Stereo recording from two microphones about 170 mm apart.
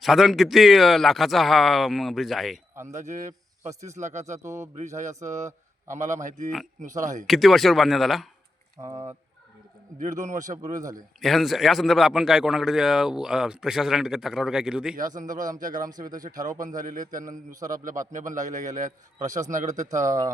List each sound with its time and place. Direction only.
0.0 s speech: centre (ahead or behind)
2.9 s a man's voice: 45° right (ahead or behind)
4.4 s a man's voice: 15° right (ahead or behind)
4.8 s a man's voice: 45° right (ahead or behind)
7.3 s speech: centre (ahead or behind)
8.8 s speech: 20° right (ahead or behind)
10.0 s a man's voice: 45° right (ahead or behind)
11.2 s speech: centre (ahead or behind)
14.9 s a man's voice: 50° right (ahead or behind)
15.7 s speech: 20° right (ahead or behind)
16.7 s a man's voice: 50° right (ahead or behind)
20.1 s speech: 20° right (ahead or behind)